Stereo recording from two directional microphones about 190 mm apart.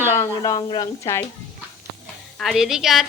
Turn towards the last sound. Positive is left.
turn(degrees=0)  # may be behind; listen again after turning